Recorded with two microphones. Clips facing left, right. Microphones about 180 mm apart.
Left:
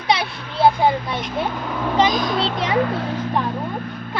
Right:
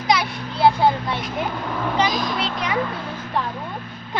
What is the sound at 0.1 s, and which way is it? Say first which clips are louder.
Children playing: even; 25° left (ahead or behind).